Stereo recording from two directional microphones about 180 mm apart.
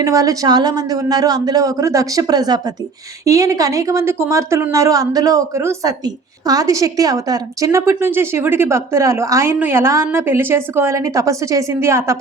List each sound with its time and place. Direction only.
0.0 s a woman's voice: 20° right (ahead or behind)